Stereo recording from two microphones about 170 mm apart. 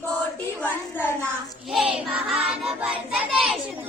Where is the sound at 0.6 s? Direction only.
10° left (ahead or behind).